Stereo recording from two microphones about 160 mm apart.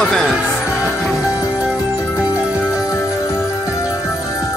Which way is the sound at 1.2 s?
20° left (ahead or behind).